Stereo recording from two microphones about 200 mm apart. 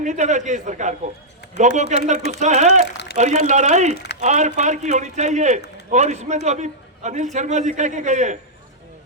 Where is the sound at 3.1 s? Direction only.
35° right (ahead or behind).